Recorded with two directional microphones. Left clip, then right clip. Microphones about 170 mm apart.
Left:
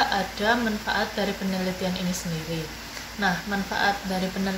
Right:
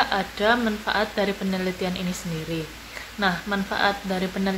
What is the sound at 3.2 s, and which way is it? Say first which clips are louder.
Speech: right 2 dB; 10° right (ahead or behind).